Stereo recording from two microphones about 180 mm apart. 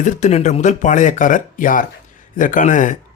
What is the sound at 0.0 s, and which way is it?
Speech, 45° left (ahead or behind).